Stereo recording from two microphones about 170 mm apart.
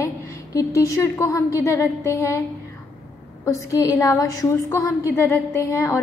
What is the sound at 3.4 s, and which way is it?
A woman's voice, 20° left (ahead or behind).